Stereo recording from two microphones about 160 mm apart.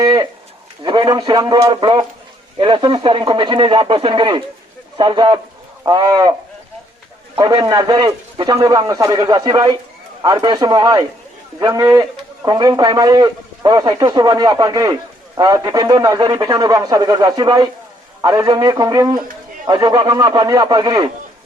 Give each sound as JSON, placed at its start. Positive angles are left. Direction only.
{"t": 0.0, "sound": "a sound", "side_deg": -25}
{"t": 0.8, "sound": "a man's voice", "side_deg": -30}
{"t": 7.3, "sound": "a man's voice", "side_deg": -25}